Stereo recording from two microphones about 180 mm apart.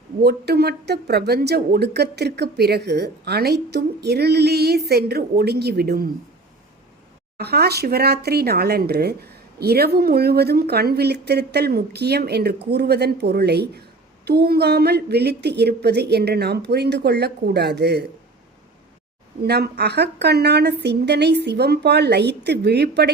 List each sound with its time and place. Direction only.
0.2 s speech: 60° right (ahead or behind)
7.3 s speech: 60° right (ahead or behind)
19.4 s speech: 60° right (ahead or behind)